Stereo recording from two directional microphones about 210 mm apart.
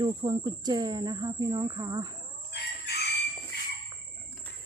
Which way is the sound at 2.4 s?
50° left (ahead or behind).